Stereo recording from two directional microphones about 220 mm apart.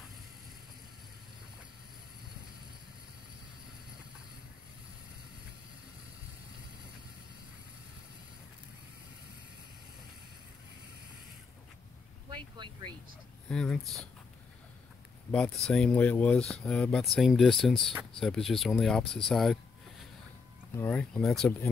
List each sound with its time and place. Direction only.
12.3 s speech: 20° right (ahead or behind)
13.5 s speech: 5° left (ahead or behind)
15.3 s speech: 5° left (ahead or behind)
20.7 s speech: 10° left (ahead or behind)